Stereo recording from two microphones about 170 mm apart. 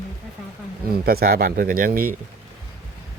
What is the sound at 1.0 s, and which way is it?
Speech, 60° right (ahead or behind).